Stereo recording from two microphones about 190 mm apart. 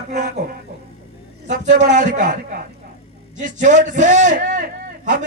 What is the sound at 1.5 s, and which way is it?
A man's voice, 40° right (ahead or behind).